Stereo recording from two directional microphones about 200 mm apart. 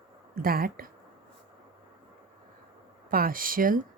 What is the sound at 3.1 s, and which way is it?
Speech, 45° right (ahead or behind).